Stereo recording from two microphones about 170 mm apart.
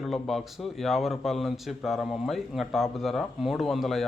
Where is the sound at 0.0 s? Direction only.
Centre (ahead or behind).